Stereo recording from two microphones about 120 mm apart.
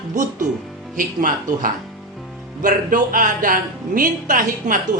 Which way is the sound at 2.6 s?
90° right.